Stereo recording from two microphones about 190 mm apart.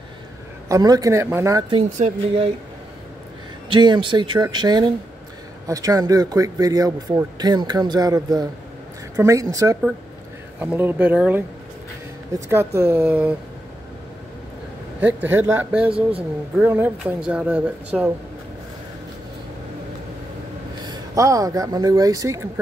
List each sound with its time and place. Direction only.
0.7 s speech: 20° right (ahead or behind)
1.8 s speech: 35° right (ahead or behind)
3.7 s speech: 25° right (ahead or behind)
15.0 s speech: 10° right (ahead or behind)
15.9 s speech: 30° right (ahead or behind)
16.5 s speech: 10° right (ahead or behind)
20.8 s speech: 20° right (ahead or behind)